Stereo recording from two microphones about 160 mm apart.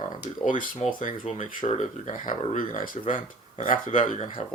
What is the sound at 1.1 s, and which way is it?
Speech, 45° left (ahead or behind).